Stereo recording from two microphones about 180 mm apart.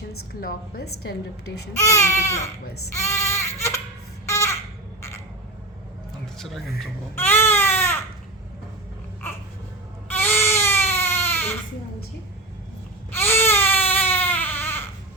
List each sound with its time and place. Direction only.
0.4 s a woman's voice: 60° left (ahead or behind)
1.8 s baby cry: 15° left (ahead or behind)
4.3 s a sound: 15° left (ahead or behind)
7.2 s baby cry: 10° left (ahead or behind)
10.1 s baby cry: 10° left (ahead or behind)
13.1 s baby cry: 10° left (ahead or behind)